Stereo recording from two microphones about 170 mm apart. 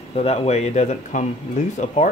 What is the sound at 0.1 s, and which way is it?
Speech, 35° left (ahead or behind).